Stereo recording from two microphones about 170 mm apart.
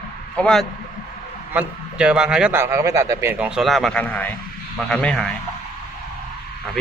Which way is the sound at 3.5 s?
Centre (ahead or behind).